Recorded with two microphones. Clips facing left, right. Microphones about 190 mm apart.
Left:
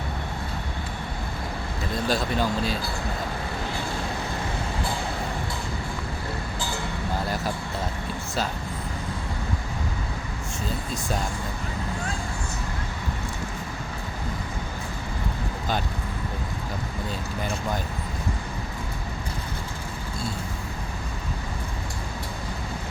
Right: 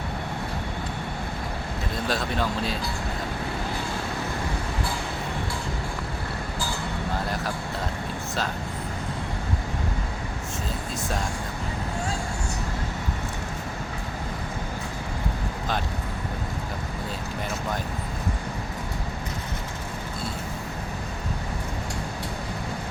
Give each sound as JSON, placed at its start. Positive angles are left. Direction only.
{"t": 2.0, "sound": "speech", "side_deg": 0}